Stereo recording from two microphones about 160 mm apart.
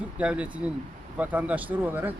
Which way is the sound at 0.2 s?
5° right (ahead or behind).